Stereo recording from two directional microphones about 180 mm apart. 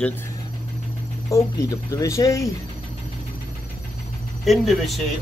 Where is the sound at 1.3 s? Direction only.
20° left (ahead or behind).